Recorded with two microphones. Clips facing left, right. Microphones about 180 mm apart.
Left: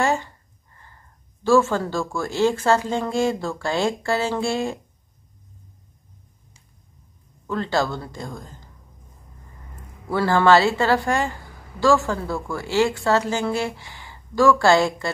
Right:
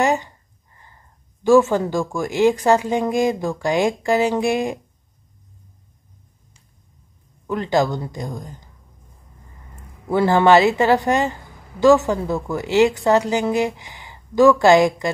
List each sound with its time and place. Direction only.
0.0 s a sound: 15° right (ahead or behind)
1.4 s speech: 15° right (ahead or behind)
7.4 s speech: 15° right (ahead or behind)
10.0 s speech: 20° right (ahead or behind)